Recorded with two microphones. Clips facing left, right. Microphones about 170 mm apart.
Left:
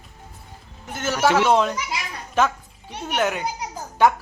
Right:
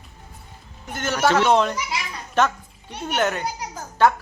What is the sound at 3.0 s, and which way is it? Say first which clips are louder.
Speech: even; 5° left (ahead or behind).